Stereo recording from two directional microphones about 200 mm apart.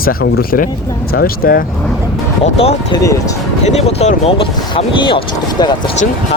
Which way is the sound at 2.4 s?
30° left (ahead or behind).